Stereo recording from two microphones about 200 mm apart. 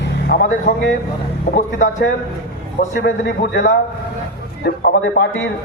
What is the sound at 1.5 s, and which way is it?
Speech, 40° left (ahead or behind).